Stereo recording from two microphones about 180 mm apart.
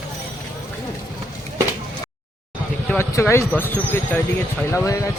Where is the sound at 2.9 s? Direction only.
15° left (ahead or behind).